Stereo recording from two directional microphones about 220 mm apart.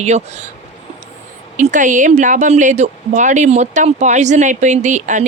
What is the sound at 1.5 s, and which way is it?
Speech, 35° right (ahead or behind).